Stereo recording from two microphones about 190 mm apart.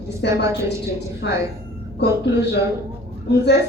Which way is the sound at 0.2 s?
65° left (ahead or behind).